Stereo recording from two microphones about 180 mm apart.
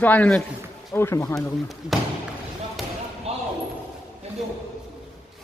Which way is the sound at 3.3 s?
35° right (ahead or behind).